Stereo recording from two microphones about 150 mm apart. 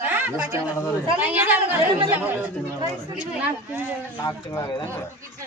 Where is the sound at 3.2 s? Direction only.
10° right (ahead or behind).